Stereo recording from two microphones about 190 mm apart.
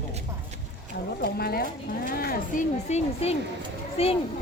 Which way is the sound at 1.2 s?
55° left (ahead or behind).